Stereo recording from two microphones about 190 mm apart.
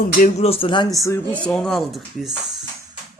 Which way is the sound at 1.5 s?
5° left (ahead or behind).